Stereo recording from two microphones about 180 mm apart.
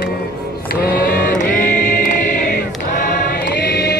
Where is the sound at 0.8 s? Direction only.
55° left (ahead or behind).